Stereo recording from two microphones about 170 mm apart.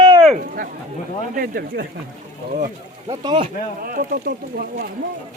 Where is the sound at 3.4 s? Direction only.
60° right (ahead or behind).